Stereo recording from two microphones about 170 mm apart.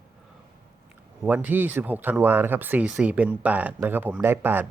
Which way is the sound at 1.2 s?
10° right (ahead or behind).